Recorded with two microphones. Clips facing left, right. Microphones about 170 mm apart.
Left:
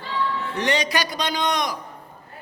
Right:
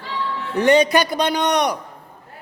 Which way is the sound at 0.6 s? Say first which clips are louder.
Right 9 dB; 55° right (ahead or behind).